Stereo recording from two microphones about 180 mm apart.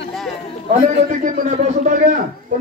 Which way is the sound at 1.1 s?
50° right (ahead or behind).